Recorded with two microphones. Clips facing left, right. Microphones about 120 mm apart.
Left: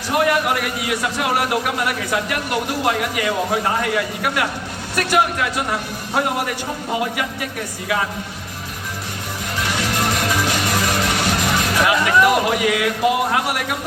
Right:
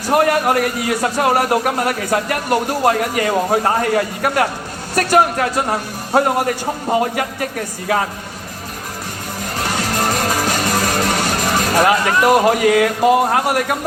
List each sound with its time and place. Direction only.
0.1 s a man's voice: 40° right (ahead or behind)
9.6 s music: 40° right (ahead or behind)